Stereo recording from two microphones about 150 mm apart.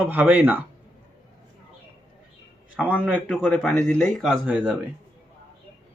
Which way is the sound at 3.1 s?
10° left (ahead or behind).